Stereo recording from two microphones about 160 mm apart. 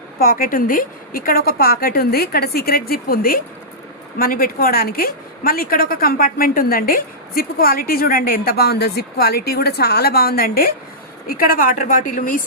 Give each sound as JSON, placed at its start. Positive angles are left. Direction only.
{"t": 0.2, "sound": "a woman's voice", "side_deg": 65}